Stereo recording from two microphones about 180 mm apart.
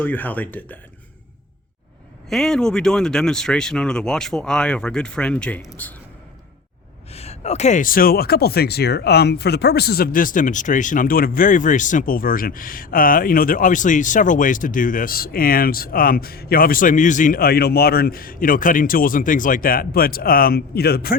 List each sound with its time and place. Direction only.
0.0 s speech: 10° left (ahead or behind)
2.3 s speech: centre (ahead or behind)
7.1 s speech: 35° left (ahead or behind); by 21.2 s 60° left (ahead or behind)